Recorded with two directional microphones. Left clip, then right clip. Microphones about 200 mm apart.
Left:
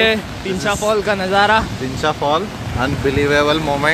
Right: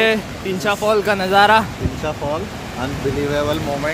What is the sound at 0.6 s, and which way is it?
Speech, 5° right (ahead or behind).